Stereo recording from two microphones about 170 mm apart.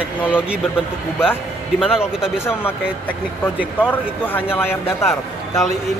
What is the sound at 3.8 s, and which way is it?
A man's voice, 10° left (ahead or behind).